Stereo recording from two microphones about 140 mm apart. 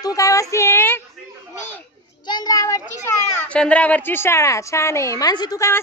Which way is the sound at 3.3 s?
10° left (ahead or behind).